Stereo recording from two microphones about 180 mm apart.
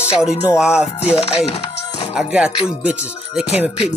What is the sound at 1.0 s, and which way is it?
Music, 35° left (ahead or behind).